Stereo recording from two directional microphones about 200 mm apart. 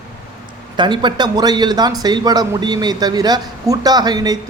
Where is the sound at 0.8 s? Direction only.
20° right (ahead or behind).